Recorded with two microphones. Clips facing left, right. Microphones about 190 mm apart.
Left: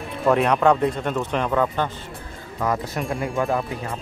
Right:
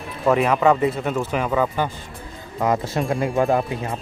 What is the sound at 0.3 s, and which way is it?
Speech, centre (ahead or behind).